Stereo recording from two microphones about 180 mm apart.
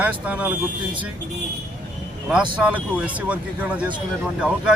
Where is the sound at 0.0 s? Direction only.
10° right (ahead or behind).